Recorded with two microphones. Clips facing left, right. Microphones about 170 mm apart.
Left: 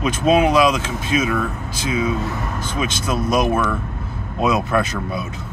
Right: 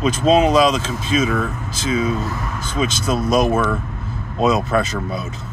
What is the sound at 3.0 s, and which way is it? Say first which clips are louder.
Speech: right 1 dB; 25° right (ahead or behind).